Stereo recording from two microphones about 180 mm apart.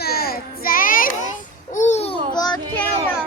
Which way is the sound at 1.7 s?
40° left (ahead or behind).